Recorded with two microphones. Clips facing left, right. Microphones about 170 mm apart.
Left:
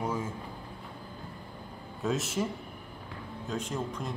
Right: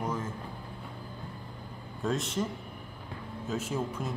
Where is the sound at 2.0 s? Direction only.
5° left (ahead or behind).